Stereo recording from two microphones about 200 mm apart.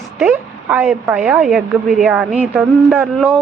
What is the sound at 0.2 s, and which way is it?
A woman's voice, 5° right (ahead or behind).